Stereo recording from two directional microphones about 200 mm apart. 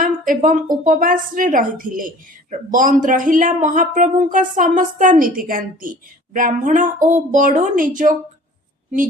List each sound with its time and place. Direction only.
0.0 s speech: 40° right (ahead or behind)